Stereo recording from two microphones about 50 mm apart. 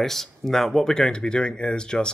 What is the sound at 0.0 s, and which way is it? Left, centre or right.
Speech, centre.